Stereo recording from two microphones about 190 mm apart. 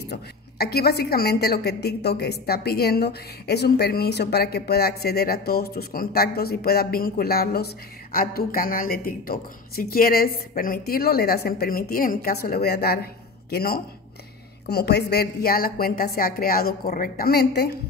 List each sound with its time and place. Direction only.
0.0 s a woman's voice: 60° left (ahead or behind)